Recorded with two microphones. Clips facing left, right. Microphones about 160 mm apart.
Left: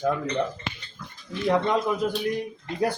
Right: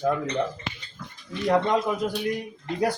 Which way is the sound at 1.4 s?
Centre (ahead or behind).